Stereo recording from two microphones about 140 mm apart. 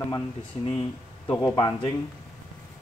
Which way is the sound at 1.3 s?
20° left (ahead or behind).